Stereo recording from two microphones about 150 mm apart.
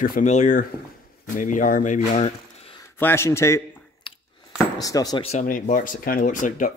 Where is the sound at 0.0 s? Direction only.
70° left (ahead or behind).